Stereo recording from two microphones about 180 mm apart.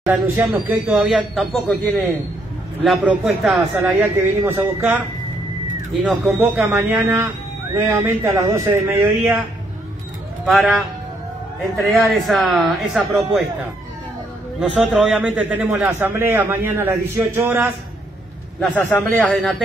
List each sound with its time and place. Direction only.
0.1 s speech: 10° right (ahead or behind)
3.7 s a man's voice: 10° right (ahead or behind)
6.0 s a man's voice: 5° right (ahead or behind)
10.4 s speech: centre (ahead or behind)
11.8 s speech: centre (ahead or behind)
14.6 s a man's voice: centre (ahead or behind)
18.6 s a man's voice: 10° left (ahead or behind)